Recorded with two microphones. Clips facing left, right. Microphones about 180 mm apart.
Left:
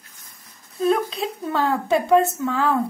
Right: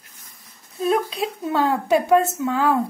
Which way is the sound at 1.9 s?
20° right (ahead or behind).